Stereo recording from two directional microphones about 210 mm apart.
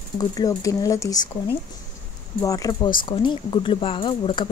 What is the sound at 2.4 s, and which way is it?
A woman's voice, 15° left (ahead or behind).